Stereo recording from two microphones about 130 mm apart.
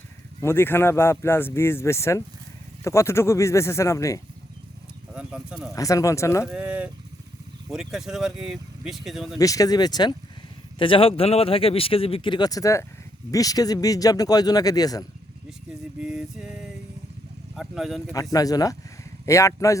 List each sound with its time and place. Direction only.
0.4 s speech: 20° left (ahead or behind)
5.1 s speech: 5° right (ahead or behind)
5.7 s speech: 25° left (ahead or behind)
6.4 s speech: 10° right (ahead or behind)
9.4 s speech: 25° left (ahead or behind)
16.0 s music: 5° right (ahead or behind)
17.5 s speech: centre (ahead or behind)
18.1 s speech: 30° left (ahead or behind)